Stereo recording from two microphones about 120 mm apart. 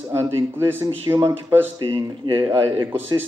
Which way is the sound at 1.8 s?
45° right (ahead or behind).